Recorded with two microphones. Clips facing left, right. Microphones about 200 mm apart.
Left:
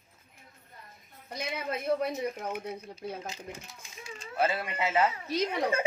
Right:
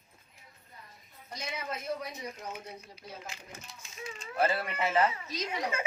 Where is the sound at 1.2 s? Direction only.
60° left (ahead or behind).